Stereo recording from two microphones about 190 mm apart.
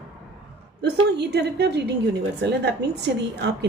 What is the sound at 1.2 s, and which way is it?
A woman's voice, 60° right (ahead or behind).